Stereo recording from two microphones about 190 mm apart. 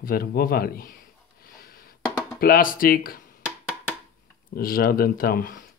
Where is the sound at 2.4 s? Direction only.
50° left (ahead or behind).